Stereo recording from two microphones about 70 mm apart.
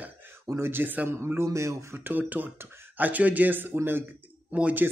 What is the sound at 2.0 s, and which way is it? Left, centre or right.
Speech, right.